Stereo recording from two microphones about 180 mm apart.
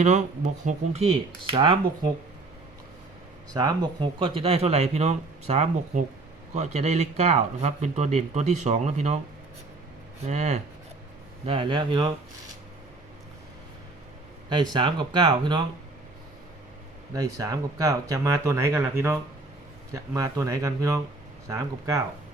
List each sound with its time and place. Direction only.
0.0 s speech: 40° right (ahead or behind); by 1.8 s 25° right (ahead or behind)
3.5 s speech: 20° right (ahead or behind); by 9.2 s 40° right (ahead or behind)
10.2 s speech: 40° right (ahead or behind)
14.5 s speech: 25° right (ahead or behind)
17.2 s speech: 20° right (ahead or behind)